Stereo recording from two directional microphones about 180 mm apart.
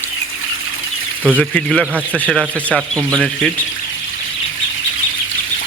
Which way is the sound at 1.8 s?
10° right (ahead or behind).